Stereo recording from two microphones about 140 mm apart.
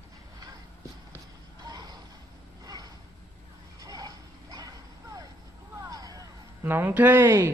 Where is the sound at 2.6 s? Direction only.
25° right (ahead or behind).